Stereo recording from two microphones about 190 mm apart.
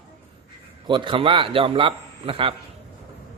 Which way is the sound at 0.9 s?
25° right (ahead or behind).